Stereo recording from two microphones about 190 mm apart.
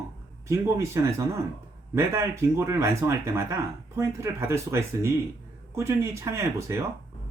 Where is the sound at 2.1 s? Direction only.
15° right (ahead or behind).